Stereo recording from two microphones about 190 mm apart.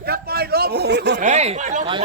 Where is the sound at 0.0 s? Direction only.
55° right (ahead or behind).